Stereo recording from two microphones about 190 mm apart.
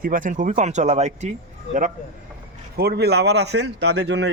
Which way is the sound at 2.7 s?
55° right (ahead or behind).